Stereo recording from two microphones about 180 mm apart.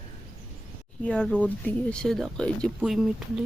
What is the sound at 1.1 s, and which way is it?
Speech, 5° left (ahead or behind).